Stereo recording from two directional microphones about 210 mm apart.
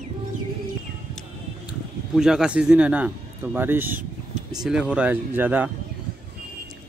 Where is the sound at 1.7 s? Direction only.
5° right (ahead or behind).